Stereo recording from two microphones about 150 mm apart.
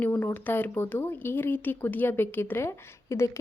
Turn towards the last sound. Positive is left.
turn(degrees=20)  # may be behind; listen again after turning